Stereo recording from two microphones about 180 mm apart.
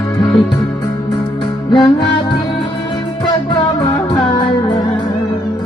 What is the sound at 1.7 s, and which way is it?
Music, 25° left (ahead or behind).